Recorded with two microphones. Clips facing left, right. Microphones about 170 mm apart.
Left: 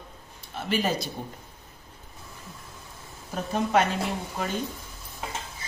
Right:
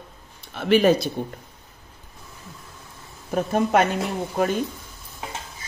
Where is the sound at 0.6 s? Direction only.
65° right (ahead or behind).